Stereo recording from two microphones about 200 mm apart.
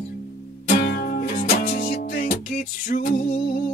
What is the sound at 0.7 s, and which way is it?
Music, 45° left (ahead or behind).